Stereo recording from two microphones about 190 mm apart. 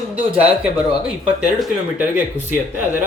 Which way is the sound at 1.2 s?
10° right (ahead or behind).